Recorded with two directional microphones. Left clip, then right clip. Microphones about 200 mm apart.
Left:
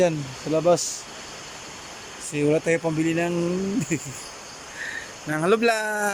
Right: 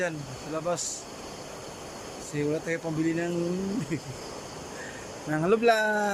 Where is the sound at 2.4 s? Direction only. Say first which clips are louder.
Left 8 dB; 5° left (ahead or behind).